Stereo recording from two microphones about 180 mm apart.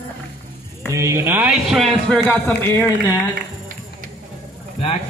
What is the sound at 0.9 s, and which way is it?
A man's voice, 15° right (ahead or behind).